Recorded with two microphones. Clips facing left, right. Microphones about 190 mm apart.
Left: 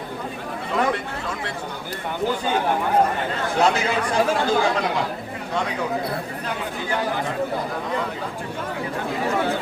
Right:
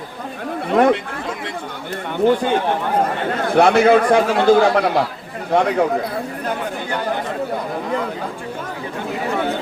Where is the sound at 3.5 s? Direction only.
60° right (ahead or behind).